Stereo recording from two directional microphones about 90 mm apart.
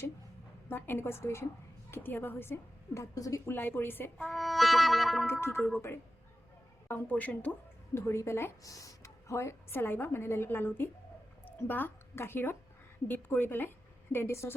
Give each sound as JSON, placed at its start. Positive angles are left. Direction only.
{"t": 0.7, "sound": "speech", "side_deg": 25}
{"t": 3.5, "sound": "speech", "side_deg": 25}
{"t": 4.2, "sound": "music", "side_deg": 0}
{"t": 5.2, "sound": "speech", "side_deg": 25}
{"t": 6.8, "sound": "speech", "side_deg": 20}
{"t": 7.9, "sound": "a woman's voice", "side_deg": 30}